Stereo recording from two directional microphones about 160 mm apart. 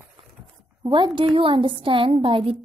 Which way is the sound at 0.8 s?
30° right (ahead or behind).